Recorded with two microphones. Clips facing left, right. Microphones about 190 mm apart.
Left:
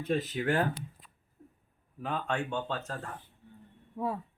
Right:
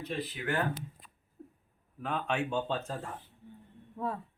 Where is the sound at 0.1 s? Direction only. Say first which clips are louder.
Left 6 dB; 45° left (ahead or behind).